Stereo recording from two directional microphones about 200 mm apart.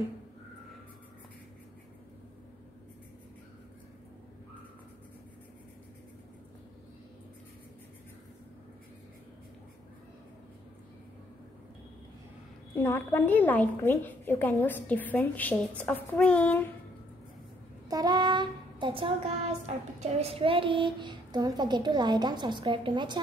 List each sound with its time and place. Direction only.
12.7 s a woman's voice: 10° left (ahead or behind)
17.8 s child singing: 20° right (ahead or behind)